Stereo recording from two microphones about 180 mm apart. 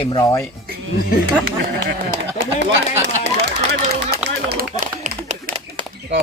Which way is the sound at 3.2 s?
65° right (ahead or behind).